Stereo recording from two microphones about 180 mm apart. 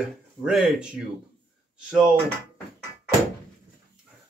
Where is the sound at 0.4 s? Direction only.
Centre (ahead or behind).